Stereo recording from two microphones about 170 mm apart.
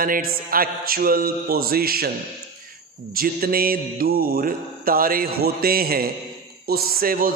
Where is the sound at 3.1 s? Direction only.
60° right (ahead or behind).